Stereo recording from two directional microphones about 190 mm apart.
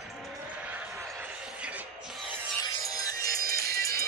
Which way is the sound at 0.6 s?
10° right (ahead or behind).